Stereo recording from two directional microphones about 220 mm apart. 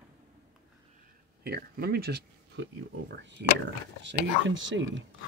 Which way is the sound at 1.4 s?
45° right (ahead or behind).